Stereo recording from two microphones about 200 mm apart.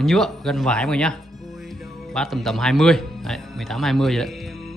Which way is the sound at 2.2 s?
Centre (ahead or behind).